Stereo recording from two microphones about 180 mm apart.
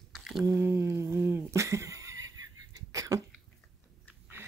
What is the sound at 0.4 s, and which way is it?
Neigh, 15° right (ahead or behind).